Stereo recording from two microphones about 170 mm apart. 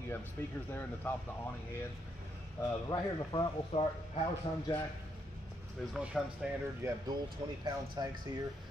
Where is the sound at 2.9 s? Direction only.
25° left (ahead or behind).